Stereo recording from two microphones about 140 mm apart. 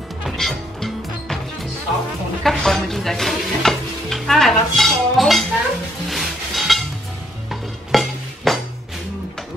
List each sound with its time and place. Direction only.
0.2 s music: centre (ahead or behind)
2.4 s stir: centre (ahead or behind)
6.0 s music: centre (ahead or behind)
7.9 s a sound: centre (ahead or behind)